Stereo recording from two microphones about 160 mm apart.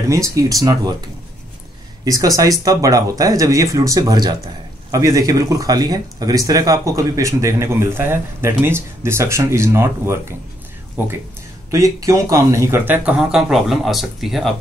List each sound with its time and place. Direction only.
0.1 s speech: 20° right (ahead or behind)
2.0 s speech: 20° right (ahead or behind)
11.7 s speech: 20° right (ahead or behind); by 14.5 s centre (ahead or behind)